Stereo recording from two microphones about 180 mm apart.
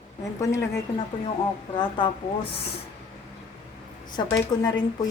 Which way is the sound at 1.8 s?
25° left (ahead or behind).